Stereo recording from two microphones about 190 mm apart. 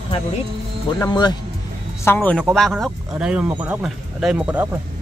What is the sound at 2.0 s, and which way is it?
Speech, 10° left (ahead or behind).